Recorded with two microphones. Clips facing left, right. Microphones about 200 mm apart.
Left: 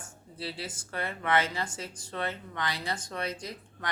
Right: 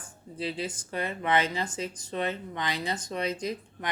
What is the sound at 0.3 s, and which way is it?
A woman's voice, 20° right (ahead or behind).